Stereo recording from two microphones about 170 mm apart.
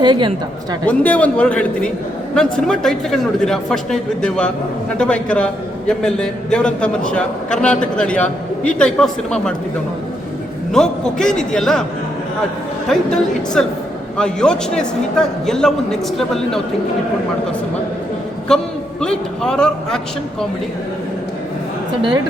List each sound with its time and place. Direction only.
0.0 s a woman's voice: 25° right (ahead or behind)
0.9 s a man's voice: 10° left (ahead or behind)
10.7 s a man's voice: 5° left (ahead or behind)
12.9 s a man's voice: 5° left (ahead or behind)
18.4 s a man's voice: 5° left (ahead or behind)